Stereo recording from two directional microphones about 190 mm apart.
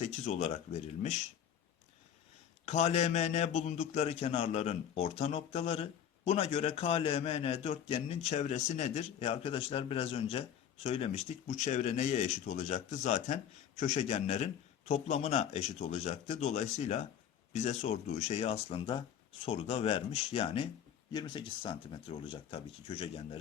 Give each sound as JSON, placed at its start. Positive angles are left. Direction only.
{"t": 0.0, "sound": "a man's voice", "side_deg": 35}
{"t": 2.6, "sound": "a man's voice", "side_deg": 35}